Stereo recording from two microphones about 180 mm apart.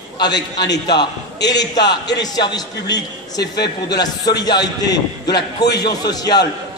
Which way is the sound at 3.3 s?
65° left (ahead or behind).